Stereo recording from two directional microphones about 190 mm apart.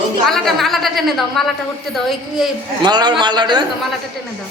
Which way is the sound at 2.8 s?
20° right (ahead or behind).